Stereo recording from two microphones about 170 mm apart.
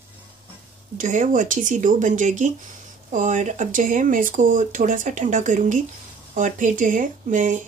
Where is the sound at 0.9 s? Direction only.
50° right (ahead or behind).